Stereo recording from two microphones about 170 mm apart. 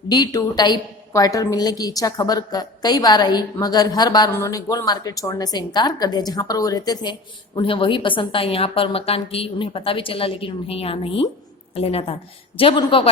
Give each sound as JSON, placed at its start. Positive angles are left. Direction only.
{"t": 0.1, "sound": "a woman's voice", "side_deg": 25}